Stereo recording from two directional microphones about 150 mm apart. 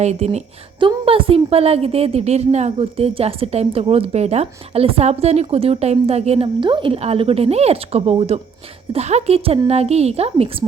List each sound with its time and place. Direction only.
0.0 s a woman's voice: 50° right (ahead or behind)
0.8 s a woman's voice: 35° right (ahead or behind)